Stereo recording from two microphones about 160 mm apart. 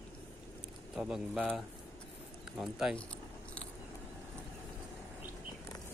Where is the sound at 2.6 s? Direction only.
5° right (ahead or behind).